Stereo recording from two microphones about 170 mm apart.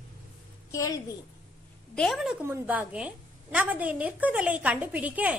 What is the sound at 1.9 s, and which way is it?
A woman's voice, centre (ahead or behind).